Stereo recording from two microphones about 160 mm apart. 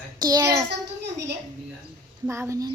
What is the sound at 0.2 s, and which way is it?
Speech, 20° right (ahead or behind).